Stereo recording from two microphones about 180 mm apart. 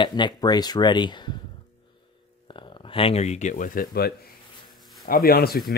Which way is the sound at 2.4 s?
25° left (ahead or behind).